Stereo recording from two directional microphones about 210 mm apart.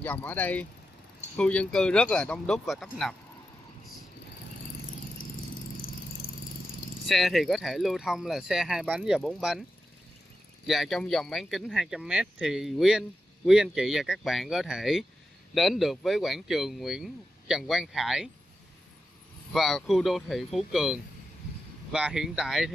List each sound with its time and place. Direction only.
0.0 s speech: 10° left (ahead or behind)
6.2 s vehicle: 45° left (ahead or behind)
7.1 s speech: centre (ahead or behind)
10.7 s speech: centre (ahead or behind)
19.5 s speech: centre (ahead or behind)